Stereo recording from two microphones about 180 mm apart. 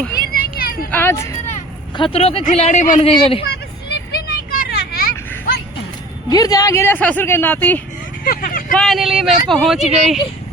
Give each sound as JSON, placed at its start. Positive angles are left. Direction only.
{"t": 0.2, "sound": "a sound", "side_deg": 55}
{"t": 0.9, "sound": "speech", "side_deg": 10}
{"t": 2.0, "sound": "speech", "side_deg": 30}
{"t": 3.0, "sound": "speech", "side_deg": 30}
{"t": 3.4, "sound": "vehicle", "side_deg": 65}
{"t": 4.5, "sound": "a sound", "side_deg": 55}
{"t": 6.3, "sound": "speech", "side_deg": 20}
{"t": 8.2, "sound": "speech", "side_deg": 50}
{"t": 8.7, "sound": "speech", "side_deg": 0}